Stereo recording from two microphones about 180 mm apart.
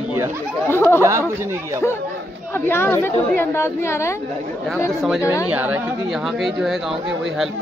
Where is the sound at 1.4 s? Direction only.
15° right (ahead or behind).